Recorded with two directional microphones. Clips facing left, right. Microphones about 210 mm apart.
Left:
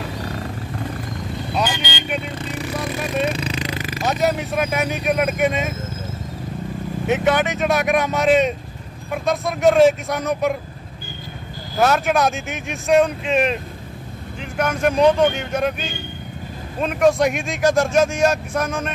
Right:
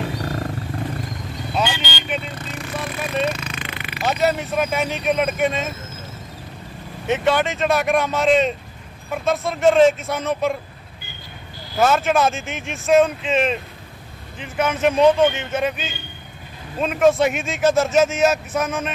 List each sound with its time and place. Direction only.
1.5 s vehicle: centre (ahead or behind)
3.3 s a sound: 35° left (ahead or behind)
4.0 s speech: centre (ahead or behind)
7.1 s speech: centre (ahead or behind)
11.8 s speech: centre (ahead or behind)